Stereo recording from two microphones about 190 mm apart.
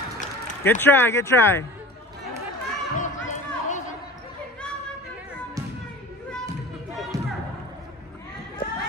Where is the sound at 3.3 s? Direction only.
40° left (ahead or behind).